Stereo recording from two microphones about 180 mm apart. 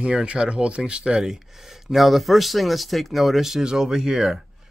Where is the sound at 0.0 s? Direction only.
5° right (ahead or behind).